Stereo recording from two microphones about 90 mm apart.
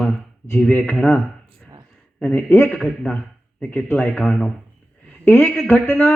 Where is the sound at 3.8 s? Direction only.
15° left (ahead or behind).